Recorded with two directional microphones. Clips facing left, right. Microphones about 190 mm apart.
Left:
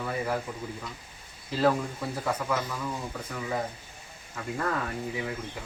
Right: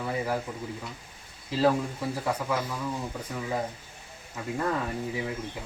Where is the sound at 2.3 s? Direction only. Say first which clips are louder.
Left 1 dB; 10° right (ahead or behind).